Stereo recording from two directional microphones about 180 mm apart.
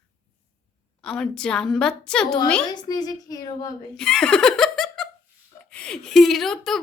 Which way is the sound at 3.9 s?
5° left (ahead or behind).